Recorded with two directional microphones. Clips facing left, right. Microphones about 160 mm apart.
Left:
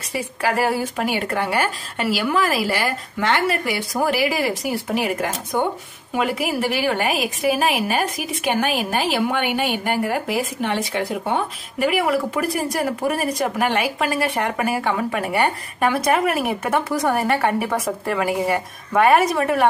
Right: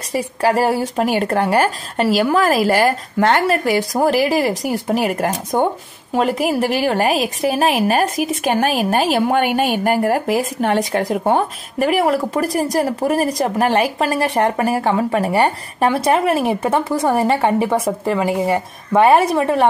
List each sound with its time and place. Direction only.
0.1 s a woman's voice: 35° right (ahead or behind)